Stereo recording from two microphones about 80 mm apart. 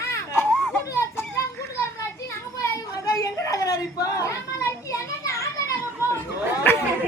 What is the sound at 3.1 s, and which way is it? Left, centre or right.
Children playing, left.